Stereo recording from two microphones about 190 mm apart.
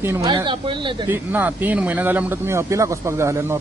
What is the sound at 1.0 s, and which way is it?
Speech, 10° right (ahead or behind).